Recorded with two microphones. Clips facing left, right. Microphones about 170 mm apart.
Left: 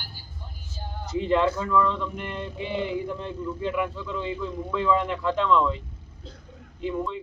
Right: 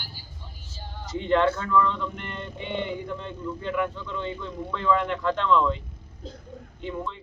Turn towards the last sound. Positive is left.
turn(degrees=5)  # may be behind; listen again after turning